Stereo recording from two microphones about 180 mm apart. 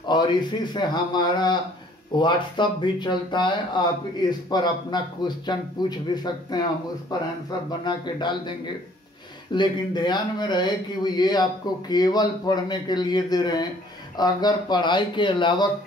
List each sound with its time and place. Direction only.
0.0 s a man's voice: 25° left (ahead or behind)